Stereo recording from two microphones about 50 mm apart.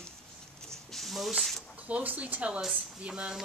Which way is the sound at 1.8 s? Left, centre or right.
Right.